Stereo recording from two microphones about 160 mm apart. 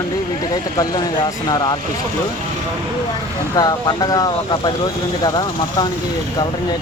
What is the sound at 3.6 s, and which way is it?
Speech, 25° left (ahead or behind).